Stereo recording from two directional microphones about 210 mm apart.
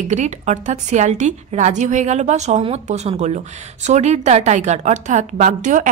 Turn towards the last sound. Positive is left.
turn(degrees=-35)  # may be behind; listen again after turning